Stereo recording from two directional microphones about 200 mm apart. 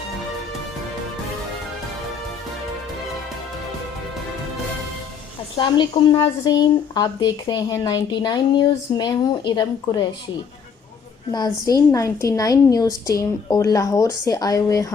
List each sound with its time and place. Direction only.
5.5 s speech: 25° left (ahead or behind)
11.3 s a woman's voice: 20° left (ahead or behind)